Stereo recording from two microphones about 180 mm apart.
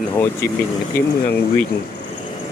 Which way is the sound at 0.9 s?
55° left (ahead or behind).